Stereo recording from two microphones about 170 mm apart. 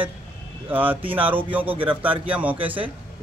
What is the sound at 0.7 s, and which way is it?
Speech, 10° right (ahead or behind).